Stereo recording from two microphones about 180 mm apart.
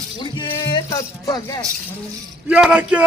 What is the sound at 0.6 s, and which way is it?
Speech, 20° left (ahead or behind).